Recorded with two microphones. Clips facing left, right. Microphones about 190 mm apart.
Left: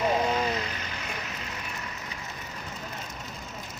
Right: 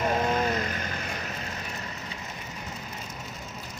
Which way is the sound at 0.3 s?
50° right (ahead or behind).